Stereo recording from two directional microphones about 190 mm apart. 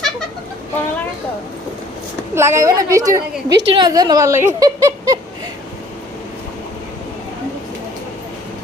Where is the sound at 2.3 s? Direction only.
15° right (ahead or behind).